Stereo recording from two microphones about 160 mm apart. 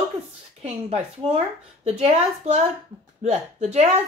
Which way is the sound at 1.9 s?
40° right (ahead or behind).